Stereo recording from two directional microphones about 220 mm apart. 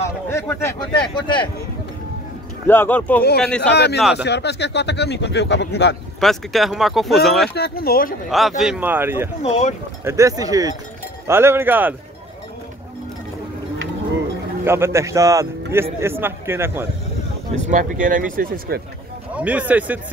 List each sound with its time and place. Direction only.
0.3 s speech: 10° left (ahead or behind)
2.7 s speech: 10° left (ahead or behind)
3.7 s speech: 50° left (ahead or behind)
6.2 s speech: centre (ahead or behind)
7.5 s speech: 45° left (ahead or behind)
8.3 s speech: centre (ahead or behind)
9.4 s speech: 30° left (ahead or behind)
10.0 s speech: 15° right (ahead or behind)
14.6 s speech: 10° right (ahead or behind)
17.6 s speech: 35° right (ahead or behind)
19.3 s speech: 5° right (ahead or behind)